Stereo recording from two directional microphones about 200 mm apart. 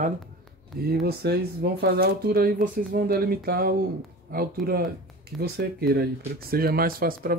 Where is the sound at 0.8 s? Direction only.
50° right (ahead or behind).